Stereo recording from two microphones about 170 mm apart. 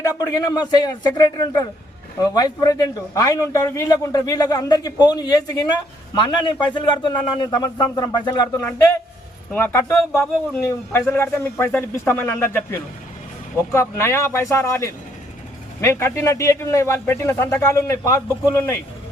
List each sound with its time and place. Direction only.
0.0 s a man's voice: 20° left (ahead or behind)
9.5 s a man's voice: 15° left (ahead or behind)